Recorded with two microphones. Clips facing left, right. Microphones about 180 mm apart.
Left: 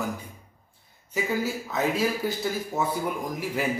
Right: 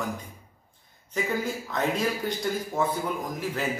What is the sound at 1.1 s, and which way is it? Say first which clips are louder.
A man's voice: left 1 dB; 5° left (ahead or behind).